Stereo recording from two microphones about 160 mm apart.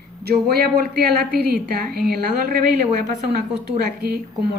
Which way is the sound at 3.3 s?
85° right.